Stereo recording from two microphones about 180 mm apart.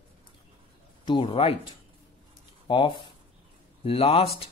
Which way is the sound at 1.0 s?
30° left (ahead or behind).